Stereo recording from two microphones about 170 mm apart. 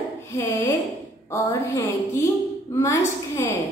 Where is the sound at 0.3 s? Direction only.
15° left (ahead or behind).